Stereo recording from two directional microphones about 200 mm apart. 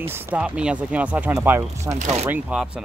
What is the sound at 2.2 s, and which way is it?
Speech, 5° right (ahead or behind).